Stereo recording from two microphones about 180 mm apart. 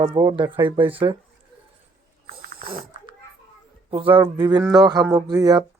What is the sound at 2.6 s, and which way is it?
A child's voice, 25° right (ahead or behind).